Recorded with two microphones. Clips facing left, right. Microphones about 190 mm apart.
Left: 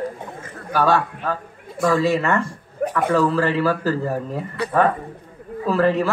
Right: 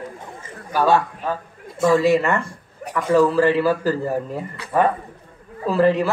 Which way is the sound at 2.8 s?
60° left (ahead or behind).